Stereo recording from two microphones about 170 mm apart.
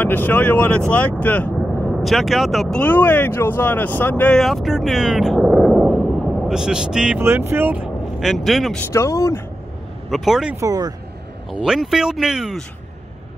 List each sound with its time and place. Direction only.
0.0 s speech: 10° left (ahead or behind)
8.9 s speech: 15° left (ahead or behind)
10.0 s speech: centre (ahead or behind)
10.6 s speech: 20° right (ahead or behind)
11.5 s speech: 5° right (ahead or behind)